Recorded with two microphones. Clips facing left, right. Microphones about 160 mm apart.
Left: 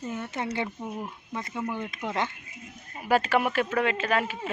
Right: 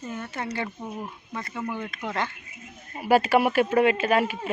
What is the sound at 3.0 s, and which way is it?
Speech, 10° right (ahead or behind).